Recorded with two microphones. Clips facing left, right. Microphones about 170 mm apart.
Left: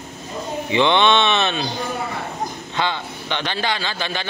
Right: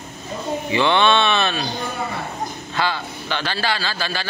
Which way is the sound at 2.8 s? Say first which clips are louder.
Even; 20° left (ahead or behind).